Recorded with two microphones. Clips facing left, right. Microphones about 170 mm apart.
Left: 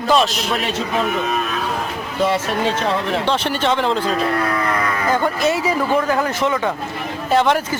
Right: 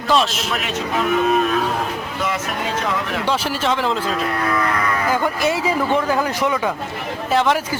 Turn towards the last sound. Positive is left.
turn(degrees=0)  # may be behind; listen again after turning